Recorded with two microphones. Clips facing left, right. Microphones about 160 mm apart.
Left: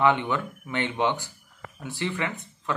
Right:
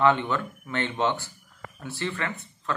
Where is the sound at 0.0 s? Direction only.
15° left (ahead or behind).